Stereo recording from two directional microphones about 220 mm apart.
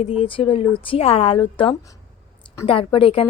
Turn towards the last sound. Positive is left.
turn(degrees=25)  # may be behind; listen again after turning